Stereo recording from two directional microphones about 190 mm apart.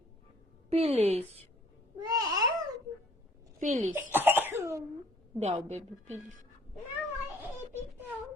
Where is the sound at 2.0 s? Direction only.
20° right (ahead or behind).